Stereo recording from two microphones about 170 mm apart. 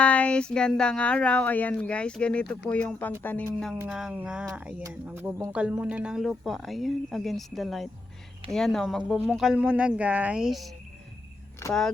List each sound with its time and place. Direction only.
0.0 s speech: 5° left (ahead or behind)
3.8 s speech: 5° right (ahead or behind)
11.6 s speech: 15° left (ahead or behind)